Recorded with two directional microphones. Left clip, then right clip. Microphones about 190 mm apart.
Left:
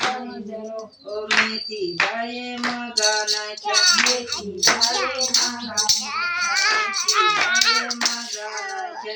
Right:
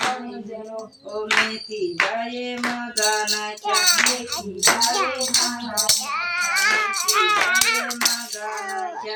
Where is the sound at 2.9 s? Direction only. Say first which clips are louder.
Left 1 dB; 35° right (ahead or behind).